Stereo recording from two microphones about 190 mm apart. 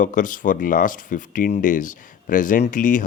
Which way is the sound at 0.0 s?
45° left (ahead or behind).